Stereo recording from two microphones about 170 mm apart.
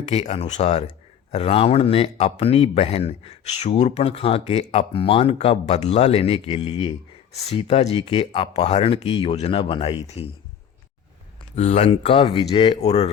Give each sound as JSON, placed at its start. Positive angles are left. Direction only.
{"t": 0.1, "sound": "speech", "side_deg": 40}
{"t": 11.5, "sound": "speech", "side_deg": 40}